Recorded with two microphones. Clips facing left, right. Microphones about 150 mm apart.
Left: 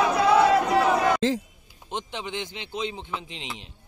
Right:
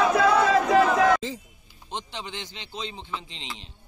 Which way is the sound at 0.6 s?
90° right.